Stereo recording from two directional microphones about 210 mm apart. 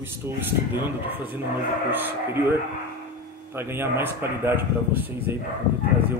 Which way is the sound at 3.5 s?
10° right (ahead or behind).